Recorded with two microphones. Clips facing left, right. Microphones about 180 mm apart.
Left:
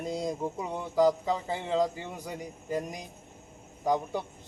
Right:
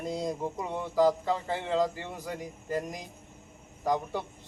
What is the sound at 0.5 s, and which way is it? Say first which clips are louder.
A man's voice: even; 15° left (ahead or behind).